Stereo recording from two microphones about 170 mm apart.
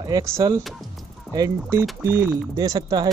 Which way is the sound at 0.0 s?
20° right (ahead or behind).